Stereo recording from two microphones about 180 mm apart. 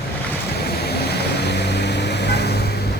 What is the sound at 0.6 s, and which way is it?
Vehicle, 60° left (ahead or behind).